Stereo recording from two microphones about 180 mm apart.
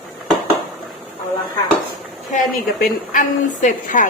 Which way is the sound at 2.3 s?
45° left (ahead or behind).